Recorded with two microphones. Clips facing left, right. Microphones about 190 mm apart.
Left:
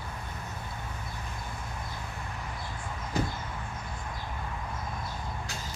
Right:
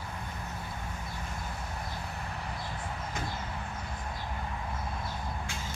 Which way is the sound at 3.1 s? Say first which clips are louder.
Left 9 dB; 35° left (ahead or behind).